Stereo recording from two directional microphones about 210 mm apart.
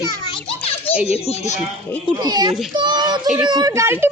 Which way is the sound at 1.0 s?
30° left (ahead or behind).